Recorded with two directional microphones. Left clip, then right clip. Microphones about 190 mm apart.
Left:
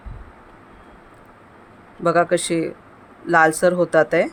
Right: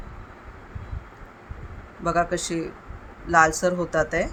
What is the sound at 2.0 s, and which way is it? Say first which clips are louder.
Speech: left 6 dB; 45° left (ahead or behind).